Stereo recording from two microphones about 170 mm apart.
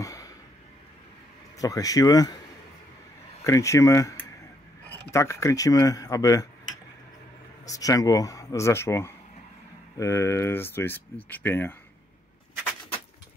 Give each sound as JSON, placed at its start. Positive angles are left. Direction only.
{"t": 0.0, "sound": "a sound", "side_deg": 20}
{"t": 1.6, "sound": "speech", "side_deg": 20}
{"t": 3.4, "sound": "speech", "side_deg": 20}
{"t": 7.6, "sound": "speech", "side_deg": 20}